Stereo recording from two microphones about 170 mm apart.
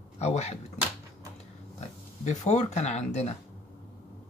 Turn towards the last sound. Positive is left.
turn(degrees=40)  # may be behind; listen again after turning